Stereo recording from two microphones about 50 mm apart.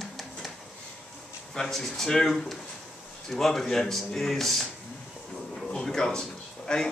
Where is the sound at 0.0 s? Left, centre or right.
Centre.